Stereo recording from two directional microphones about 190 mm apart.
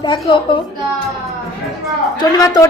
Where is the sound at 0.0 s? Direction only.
25° left (ahead or behind).